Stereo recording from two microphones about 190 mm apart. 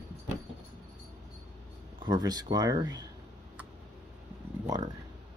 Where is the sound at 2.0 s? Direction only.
20° right (ahead or behind).